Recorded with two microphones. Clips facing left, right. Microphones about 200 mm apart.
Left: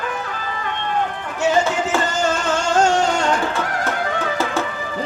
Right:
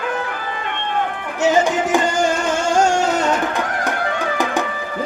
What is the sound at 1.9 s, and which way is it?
Music, 15° right (ahead or behind).